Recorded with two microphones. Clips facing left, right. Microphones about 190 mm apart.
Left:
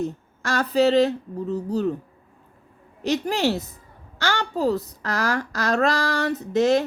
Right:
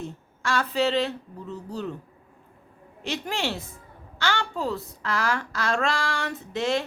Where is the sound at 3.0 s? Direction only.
40° left (ahead or behind).